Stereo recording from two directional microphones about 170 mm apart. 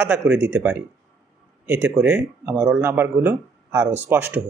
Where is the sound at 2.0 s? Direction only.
10° right (ahead or behind).